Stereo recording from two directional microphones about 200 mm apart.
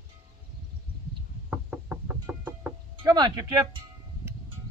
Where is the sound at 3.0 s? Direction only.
20° right (ahead or behind).